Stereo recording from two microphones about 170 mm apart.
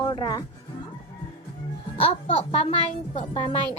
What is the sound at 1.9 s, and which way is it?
A woman's voice, 30° left (ahead or behind).